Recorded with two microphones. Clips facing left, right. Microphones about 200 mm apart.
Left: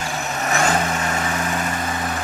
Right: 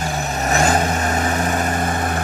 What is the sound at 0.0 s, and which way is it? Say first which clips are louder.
Vehicle: right 3 dB; 35° right (ahead or behind).